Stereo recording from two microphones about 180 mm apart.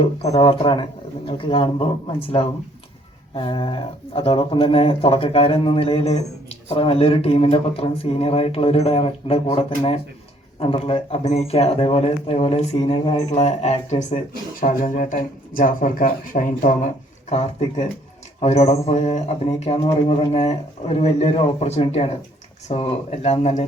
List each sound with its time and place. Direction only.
0.3 s speech: 25° left (ahead or behind)
3.3 s speech: 30° left (ahead or behind)
14.6 s speech: 50° left (ahead or behind)